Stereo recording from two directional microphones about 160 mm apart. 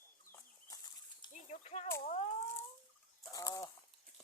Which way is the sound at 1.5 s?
45° left (ahead or behind).